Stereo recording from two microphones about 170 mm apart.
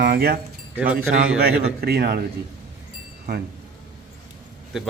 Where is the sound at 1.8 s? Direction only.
65° right (ahead or behind).